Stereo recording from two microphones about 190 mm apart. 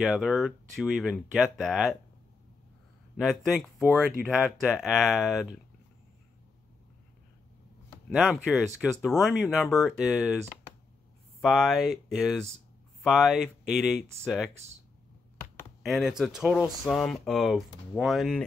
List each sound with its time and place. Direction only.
0.0 s speech: 5° right (ahead or behind)
3.2 s speech: centre (ahead or behind)
8.1 s speech: 5° right (ahead or behind)
11.4 s speech: centre (ahead or behind)
15.8 s speech: centre (ahead or behind)